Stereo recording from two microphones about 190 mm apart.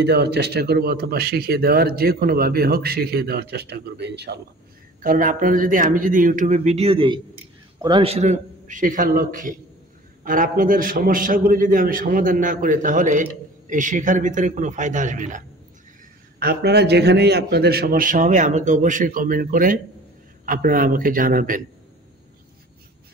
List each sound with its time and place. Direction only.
0.0 s speech: 60° right (ahead or behind)
5.0 s a man's voice: 45° right (ahead or behind)
16.3 s a man's voice: 55° right (ahead or behind)